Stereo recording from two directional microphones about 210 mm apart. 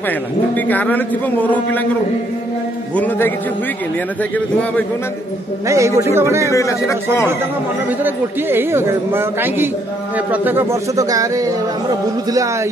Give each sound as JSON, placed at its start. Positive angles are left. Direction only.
{"t": 0.6, "sound": "a man's voice", "side_deg": 10}
{"t": 3.0, "sound": "a man's voice", "side_deg": 10}
{"t": 5.7, "sound": "a man's voice", "side_deg": -15}
{"t": 6.5, "sound": "a man's voice", "side_deg": 15}
{"t": 8.0, "sound": "a man's voice", "side_deg": -10}